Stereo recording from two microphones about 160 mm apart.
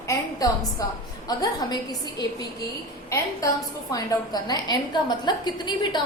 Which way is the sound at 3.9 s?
25° left (ahead or behind).